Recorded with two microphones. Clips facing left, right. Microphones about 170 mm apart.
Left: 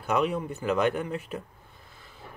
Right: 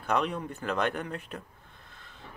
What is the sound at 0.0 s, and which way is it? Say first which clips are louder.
Speech: left 3 dB; 5° left (ahead or behind).